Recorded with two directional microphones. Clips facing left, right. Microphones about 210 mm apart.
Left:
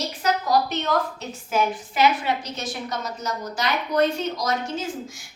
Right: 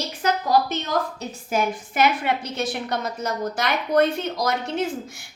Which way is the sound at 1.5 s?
55° right (ahead or behind).